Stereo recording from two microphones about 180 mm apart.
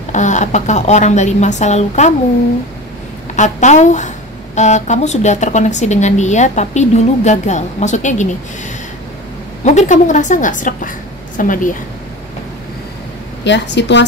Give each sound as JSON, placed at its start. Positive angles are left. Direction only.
{"t": 0.1, "sound": "a woman's voice", "side_deg": 40}
{"t": 3.3, "sound": "a woman's voice", "side_deg": 40}
{"t": 9.7, "sound": "a woman's voice", "side_deg": 40}
{"t": 13.4, "sound": "a woman's voice", "side_deg": 75}